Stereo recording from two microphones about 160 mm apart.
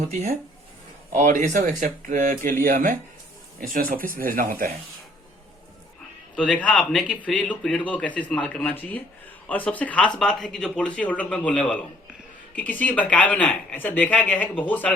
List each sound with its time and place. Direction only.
0.1 s speech: 45° right (ahead or behind)
1.1 s speech: 55° right (ahead or behind)
6.3 s speech: 5° left (ahead or behind)